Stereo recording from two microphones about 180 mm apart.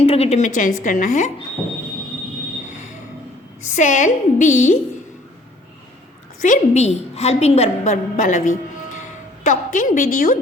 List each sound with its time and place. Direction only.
0.0 s a woman's voice: 35° left (ahead or behind)
2.6 s a sound: 40° left (ahead or behind)
3.7 s a woman's voice: 45° left (ahead or behind)
6.4 s a woman's voice: 40° left (ahead or behind)